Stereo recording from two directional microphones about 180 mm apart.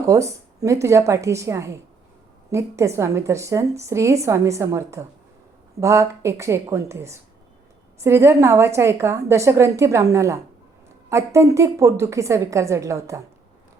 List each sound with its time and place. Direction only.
0.1 s a woman's voice: 15° right (ahead or behind)